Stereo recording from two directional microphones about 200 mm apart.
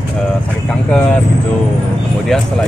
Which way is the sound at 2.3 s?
Centre (ahead or behind).